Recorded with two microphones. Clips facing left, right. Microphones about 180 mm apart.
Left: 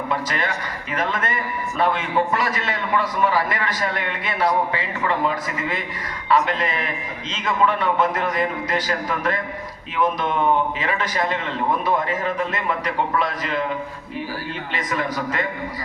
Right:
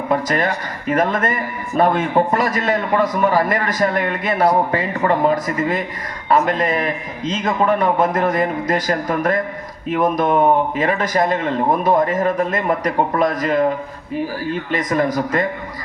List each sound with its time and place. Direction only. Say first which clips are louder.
0.1 s a man's voice: right 9 dB; 45° right (ahead or behind)